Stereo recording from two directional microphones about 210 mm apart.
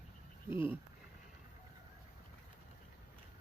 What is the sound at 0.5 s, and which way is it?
Speech, 10° right (ahead or behind).